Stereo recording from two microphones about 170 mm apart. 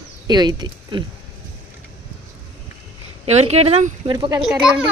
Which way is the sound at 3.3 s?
40° right (ahead or behind).